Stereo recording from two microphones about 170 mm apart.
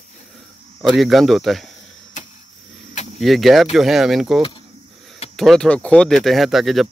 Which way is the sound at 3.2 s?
Centre (ahead or behind).